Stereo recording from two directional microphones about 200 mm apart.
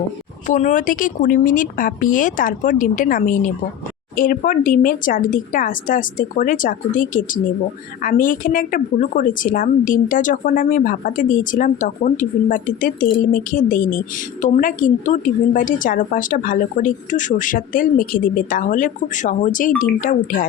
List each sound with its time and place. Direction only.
0.4 s a woman's voice: 40° left (ahead or behind)